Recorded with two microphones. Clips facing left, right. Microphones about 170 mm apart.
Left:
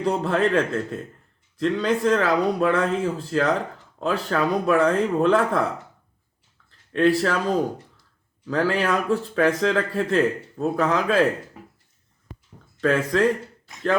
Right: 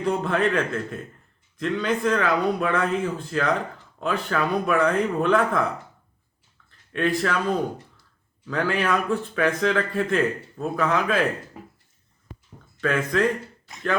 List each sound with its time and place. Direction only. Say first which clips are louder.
0.0 s speech: left 1 dB; 30° left (ahead or behind)
6.7 s speech: left 5 dB; 30° left (ahead or behind)
12.8 s speech: left 2 dB; 35° left (ahead or behind)